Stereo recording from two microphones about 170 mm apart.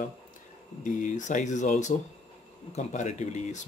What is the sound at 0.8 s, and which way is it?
Speech, 45° left (ahead or behind).